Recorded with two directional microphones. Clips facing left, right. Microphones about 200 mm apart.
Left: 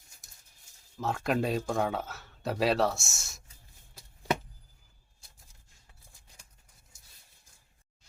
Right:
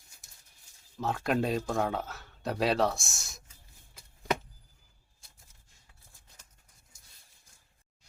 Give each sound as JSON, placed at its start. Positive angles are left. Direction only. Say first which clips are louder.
{"t": 0.9, "sound": "speech", "louder": "even", "side_deg": 0}